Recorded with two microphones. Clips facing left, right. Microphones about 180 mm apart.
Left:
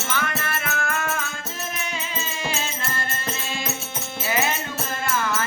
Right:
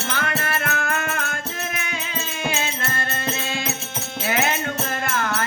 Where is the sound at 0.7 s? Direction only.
60° right (ahead or behind).